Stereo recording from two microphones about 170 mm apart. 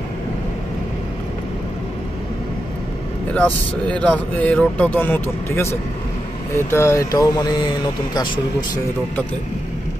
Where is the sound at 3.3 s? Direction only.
10° left (ahead or behind).